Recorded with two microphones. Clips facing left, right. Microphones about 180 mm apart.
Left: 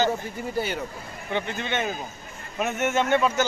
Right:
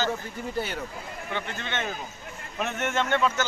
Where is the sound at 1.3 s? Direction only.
15° left (ahead or behind).